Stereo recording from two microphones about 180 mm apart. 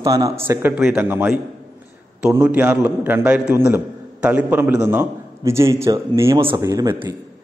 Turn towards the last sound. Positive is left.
turn(degrees=-20)  # may be behind; listen again after turning